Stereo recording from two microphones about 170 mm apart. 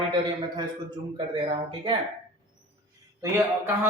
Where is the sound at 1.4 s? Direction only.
30° right (ahead or behind).